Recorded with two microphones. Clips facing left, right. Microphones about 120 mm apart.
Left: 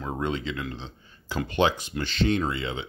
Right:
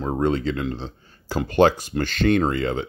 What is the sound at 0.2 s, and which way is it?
Speech, 40° right (ahead or behind).